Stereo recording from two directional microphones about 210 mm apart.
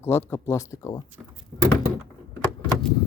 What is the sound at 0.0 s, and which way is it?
Speech, 10° left (ahead or behind).